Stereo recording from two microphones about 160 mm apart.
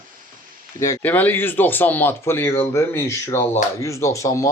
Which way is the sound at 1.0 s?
10° left (ahead or behind).